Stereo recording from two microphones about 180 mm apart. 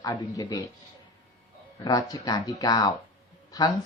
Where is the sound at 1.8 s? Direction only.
20° left (ahead or behind).